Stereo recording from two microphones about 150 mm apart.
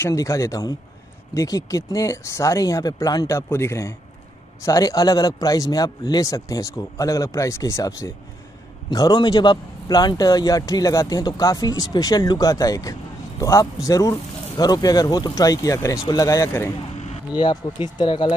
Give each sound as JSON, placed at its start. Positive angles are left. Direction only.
{"t": 0.0, "sound": "a man's voice", "side_deg": 20}
{"t": 17.3, "sound": "speech", "side_deg": 30}